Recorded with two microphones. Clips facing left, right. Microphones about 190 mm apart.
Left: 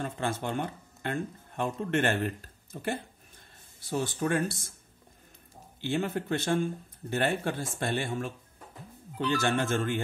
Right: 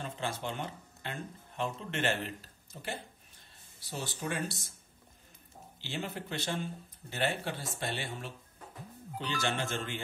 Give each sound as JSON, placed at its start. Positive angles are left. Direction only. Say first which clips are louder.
{"t": 0.0, "sound": "speech", "louder": "left 5 dB", "side_deg": 50}
{"t": 5.8, "sound": "speech", "louder": "left 9 dB", "side_deg": 55}